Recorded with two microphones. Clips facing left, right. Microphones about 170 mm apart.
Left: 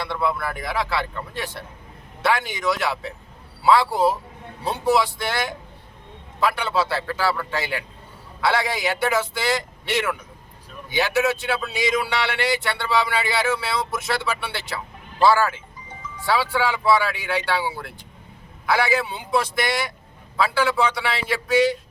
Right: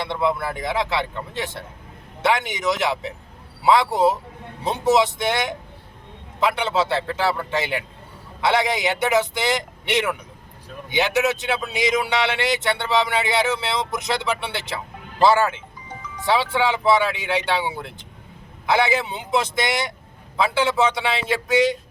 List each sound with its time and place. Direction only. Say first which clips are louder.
0.0 s a man's voice: right 2 dB; 20° right (ahead or behind)